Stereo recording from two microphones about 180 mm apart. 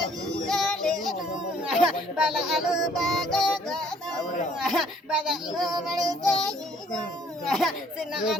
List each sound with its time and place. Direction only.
0.4 s child singing: 5° left (ahead or behind)
7.4 s child singing: centre (ahead or behind)